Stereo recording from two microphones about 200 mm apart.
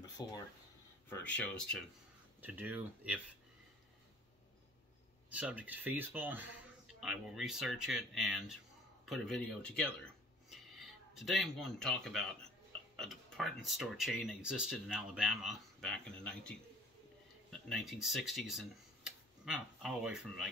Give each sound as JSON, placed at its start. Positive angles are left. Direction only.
{"t": 0.2, "sound": "speech", "side_deg": 20}
{"t": 1.0, "sound": "speech", "side_deg": 10}
{"t": 2.4, "sound": "speech", "side_deg": -10}
{"t": 5.3, "sound": "speech", "side_deg": -5}